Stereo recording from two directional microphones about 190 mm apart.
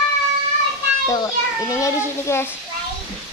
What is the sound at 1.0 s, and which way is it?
A child's voice, 15° left (ahead or behind).